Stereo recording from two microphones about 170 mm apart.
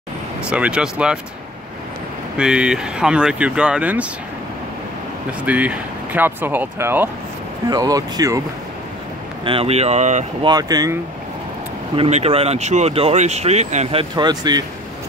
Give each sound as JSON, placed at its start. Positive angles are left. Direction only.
{"t": 0.4, "sound": "speech", "side_deg": -5}
{"t": 2.3, "sound": "speech", "side_deg": -5}
{"t": 5.4, "sound": "speech", "side_deg": -10}
{"t": 9.4, "sound": "speech", "side_deg": -35}
{"t": 10.4, "sound": "speech", "side_deg": -25}
{"t": 12.0, "sound": "speech", "side_deg": -35}
{"t": 14.1, "sound": "speech", "side_deg": -25}